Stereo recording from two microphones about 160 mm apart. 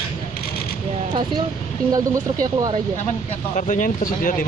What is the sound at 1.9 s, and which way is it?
Speech, 20° right (ahead or behind).